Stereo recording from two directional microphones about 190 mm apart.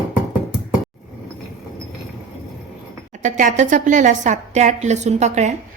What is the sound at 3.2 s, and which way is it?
A woman's voice, 40° right (ahead or behind).